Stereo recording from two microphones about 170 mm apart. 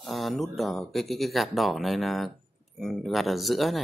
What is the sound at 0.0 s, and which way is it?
Speech, centre (ahead or behind).